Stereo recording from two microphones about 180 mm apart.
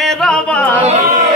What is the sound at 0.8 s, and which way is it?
Speech, 40° right (ahead or behind).